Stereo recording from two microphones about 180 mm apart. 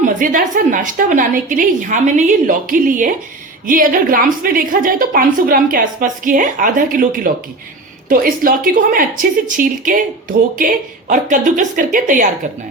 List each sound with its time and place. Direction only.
0.0 s a woman's voice: 50° right (ahead or behind)
11.1 s a woman's voice: 45° right (ahead or behind)